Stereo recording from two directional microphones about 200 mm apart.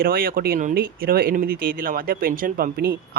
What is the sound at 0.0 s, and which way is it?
Speech, 50° right (ahead or behind).